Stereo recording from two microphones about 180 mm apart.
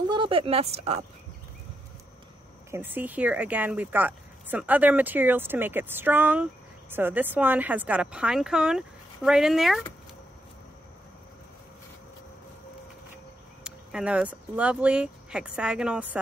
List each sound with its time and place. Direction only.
0.1 s speech: 30° right (ahead or behind)
2.7 s a woman's voice: 10° right (ahead or behind)
13.7 s speech: 5° right (ahead or behind)